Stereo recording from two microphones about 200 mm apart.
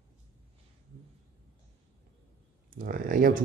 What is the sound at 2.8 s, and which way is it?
Speech, 45° right (ahead or behind).